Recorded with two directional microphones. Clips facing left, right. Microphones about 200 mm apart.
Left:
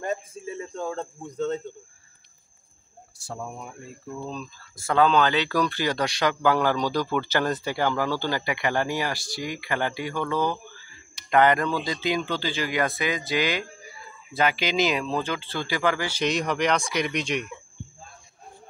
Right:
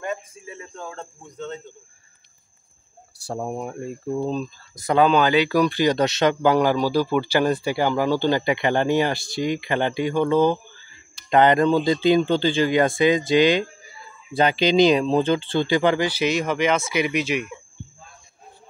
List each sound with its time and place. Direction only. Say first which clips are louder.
0.0 s a sound: left 1 dB; 35° left (ahead or behind)
3.3 s speech: right 8 dB; 45° right (ahead or behind)
4.7 s speech: right 3 dB; 15° right (ahead or behind)
16.1 s speech: right 3 dB; 5° right (ahead or behind)